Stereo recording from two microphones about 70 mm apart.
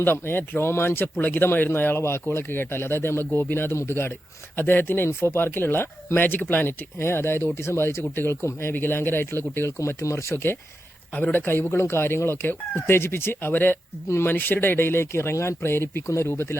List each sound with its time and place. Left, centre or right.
0.0 s speech: left
10.3 s speech: left